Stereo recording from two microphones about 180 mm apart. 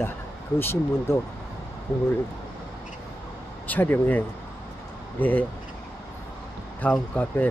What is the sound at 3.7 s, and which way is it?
Speech, 10° left (ahead or behind).